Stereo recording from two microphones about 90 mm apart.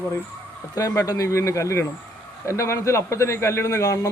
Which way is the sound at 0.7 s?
35° left (ahead or behind).